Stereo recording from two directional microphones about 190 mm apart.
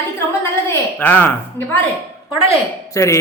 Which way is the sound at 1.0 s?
10° left (ahead or behind).